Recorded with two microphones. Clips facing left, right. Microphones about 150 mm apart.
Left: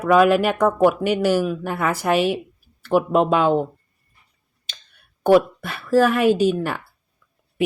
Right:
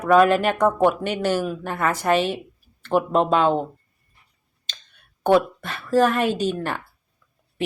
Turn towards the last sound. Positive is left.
turn(degrees=10)  # may be behind; listen again after turning